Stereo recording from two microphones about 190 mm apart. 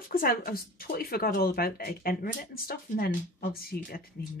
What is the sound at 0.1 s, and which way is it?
Speech, 50° left (ahead or behind).